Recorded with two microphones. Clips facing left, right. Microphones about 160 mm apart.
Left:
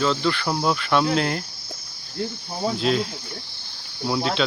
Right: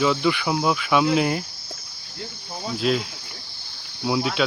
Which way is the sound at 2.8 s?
5° right (ahead or behind).